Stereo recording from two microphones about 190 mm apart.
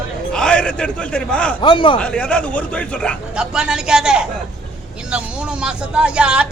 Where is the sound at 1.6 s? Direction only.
25° left (ahead or behind).